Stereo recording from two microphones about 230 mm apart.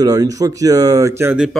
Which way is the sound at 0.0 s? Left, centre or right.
Centre.